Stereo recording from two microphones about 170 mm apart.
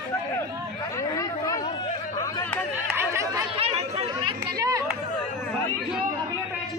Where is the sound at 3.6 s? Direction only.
35° right (ahead or behind); by 5.0 s 20° right (ahead or behind).